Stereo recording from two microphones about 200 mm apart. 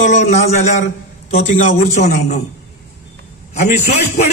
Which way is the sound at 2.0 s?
40° left (ahead or behind).